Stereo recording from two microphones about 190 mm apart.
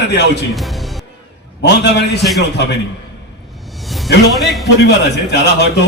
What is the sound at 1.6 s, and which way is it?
A man's voice, 65° left (ahead or behind).